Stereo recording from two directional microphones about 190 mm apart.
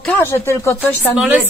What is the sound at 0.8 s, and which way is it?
Speech, 5° right (ahead or behind).